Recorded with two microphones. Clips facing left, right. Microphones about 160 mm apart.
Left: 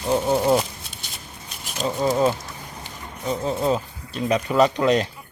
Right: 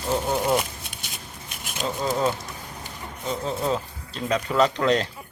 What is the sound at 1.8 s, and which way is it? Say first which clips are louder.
Speech: left 4 dB; 15° left (ahead or behind).